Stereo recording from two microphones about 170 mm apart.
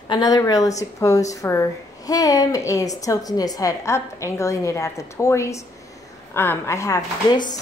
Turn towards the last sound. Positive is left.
turn(degrees=25)  # may be behind; listen again after turning